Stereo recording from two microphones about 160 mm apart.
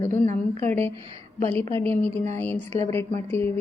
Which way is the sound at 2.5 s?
40° right (ahead or behind).